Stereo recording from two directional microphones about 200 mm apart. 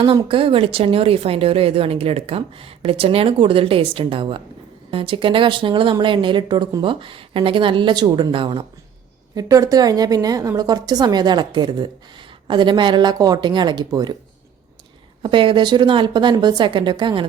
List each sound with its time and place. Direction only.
0.0 s a woman's voice: 25° right (ahead or behind)
15.2 s a woman's voice: 25° right (ahead or behind)